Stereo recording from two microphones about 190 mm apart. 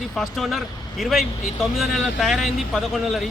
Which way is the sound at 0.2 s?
Centre (ahead or behind).